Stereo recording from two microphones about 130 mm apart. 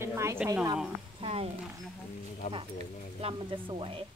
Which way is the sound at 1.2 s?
50° right (ahead or behind).